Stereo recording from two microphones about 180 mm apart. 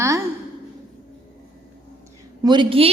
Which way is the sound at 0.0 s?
15° right (ahead or behind).